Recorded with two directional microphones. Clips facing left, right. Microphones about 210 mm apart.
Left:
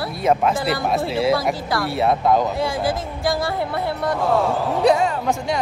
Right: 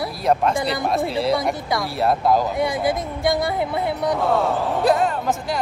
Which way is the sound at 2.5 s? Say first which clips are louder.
Right 1 dB; 20° right (ahead or behind).